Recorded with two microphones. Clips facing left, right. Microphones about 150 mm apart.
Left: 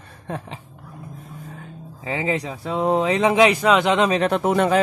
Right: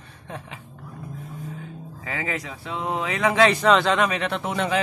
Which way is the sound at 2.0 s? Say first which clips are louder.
Left 6 dB; 25° left (ahead or behind).